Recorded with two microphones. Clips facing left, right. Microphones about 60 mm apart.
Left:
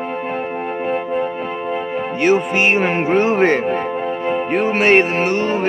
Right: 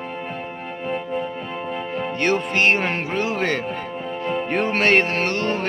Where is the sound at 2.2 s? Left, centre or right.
Centre.